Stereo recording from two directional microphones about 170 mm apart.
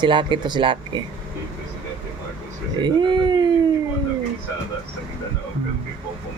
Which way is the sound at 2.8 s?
25° right (ahead or behind).